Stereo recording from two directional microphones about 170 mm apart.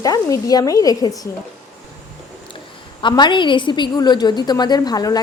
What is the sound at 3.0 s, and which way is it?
Speech, 25° left (ahead or behind).